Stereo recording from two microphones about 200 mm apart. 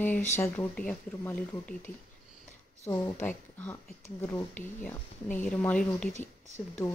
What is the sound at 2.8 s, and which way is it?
Speech, 10° left (ahead or behind).